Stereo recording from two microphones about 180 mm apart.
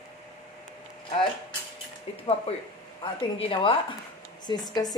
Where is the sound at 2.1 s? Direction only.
30° left (ahead or behind).